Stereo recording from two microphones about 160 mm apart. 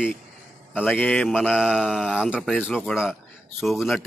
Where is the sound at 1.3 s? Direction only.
5° right (ahead or behind).